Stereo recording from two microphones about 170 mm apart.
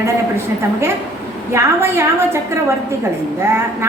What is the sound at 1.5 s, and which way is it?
Speech, 15° right (ahead or behind).